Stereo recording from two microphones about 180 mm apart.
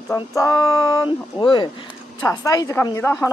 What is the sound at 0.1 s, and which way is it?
Speech, 15° left (ahead or behind).